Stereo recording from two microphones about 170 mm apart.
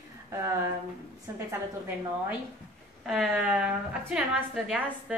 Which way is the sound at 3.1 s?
5° right (ahead or behind).